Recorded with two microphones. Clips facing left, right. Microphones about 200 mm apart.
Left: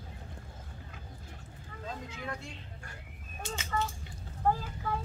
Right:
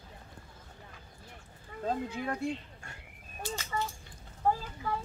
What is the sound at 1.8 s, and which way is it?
Speech, 55° right (ahead or behind).